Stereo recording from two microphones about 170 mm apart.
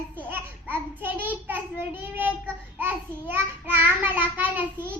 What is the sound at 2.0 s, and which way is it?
Child singing, 10° right (ahead or behind).